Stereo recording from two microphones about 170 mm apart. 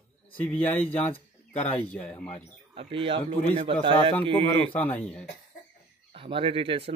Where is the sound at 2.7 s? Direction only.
30° right (ahead or behind).